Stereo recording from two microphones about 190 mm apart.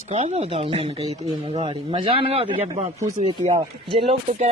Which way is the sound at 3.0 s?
15° right (ahead or behind).